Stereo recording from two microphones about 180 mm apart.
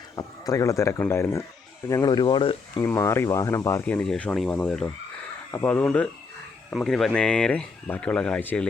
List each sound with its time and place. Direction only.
0.2 s speech: 20° left (ahead or behind)
2.8 s speech: 15° left (ahead or behind)